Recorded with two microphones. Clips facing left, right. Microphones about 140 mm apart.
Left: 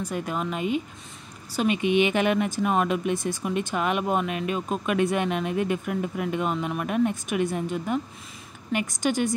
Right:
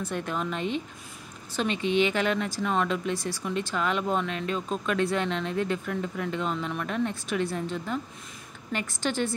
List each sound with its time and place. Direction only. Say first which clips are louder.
0.0 s speech: left 2 dB; 10° left (ahead or behind)